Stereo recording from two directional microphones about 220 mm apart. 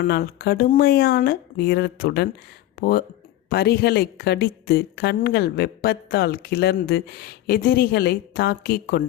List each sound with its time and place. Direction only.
0.0 s a woman's voice: 45° left (ahead or behind)